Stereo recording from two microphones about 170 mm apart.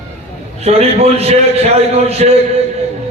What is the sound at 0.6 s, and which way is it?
A man's voice, 40° right (ahead or behind).